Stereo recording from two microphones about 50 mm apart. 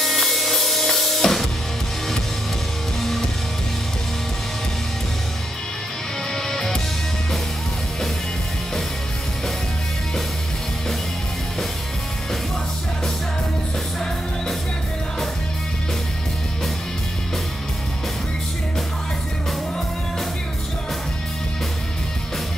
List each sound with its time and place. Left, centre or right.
0.0 s music: centre
3.0 s music: centre
6.3 s music: centre